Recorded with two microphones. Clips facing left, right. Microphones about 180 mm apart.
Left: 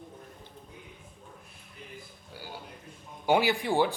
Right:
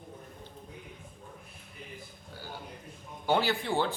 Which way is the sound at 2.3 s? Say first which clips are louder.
Left 1 dB; 10° left (ahead or behind).